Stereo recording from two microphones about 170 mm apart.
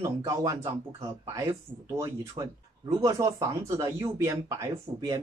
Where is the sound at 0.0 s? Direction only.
20° right (ahead or behind).